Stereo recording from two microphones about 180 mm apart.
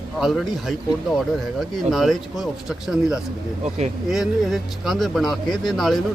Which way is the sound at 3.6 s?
35° right (ahead or behind).